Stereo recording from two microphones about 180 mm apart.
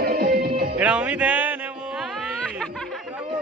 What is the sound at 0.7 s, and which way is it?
Music, 5° right (ahead or behind).